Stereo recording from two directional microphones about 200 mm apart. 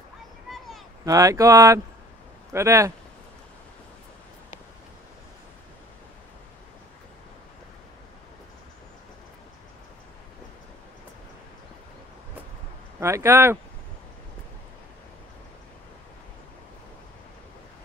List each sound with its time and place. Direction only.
1.0 s speech: 15° right (ahead or behind)
13.0 s speech: 15° right (ahead or behind)